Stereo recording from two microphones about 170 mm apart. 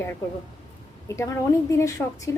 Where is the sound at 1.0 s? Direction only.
15° left (ahead or behind).